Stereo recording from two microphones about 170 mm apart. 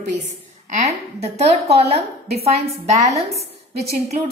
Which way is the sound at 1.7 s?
35° right (ahead or behind).